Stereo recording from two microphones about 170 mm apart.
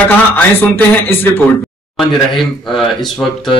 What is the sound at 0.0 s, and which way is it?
A man's voice, 10° left (ahead or behind).